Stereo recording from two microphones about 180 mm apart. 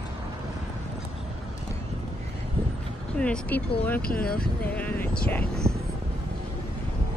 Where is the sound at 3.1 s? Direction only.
5° left (ahead or behind).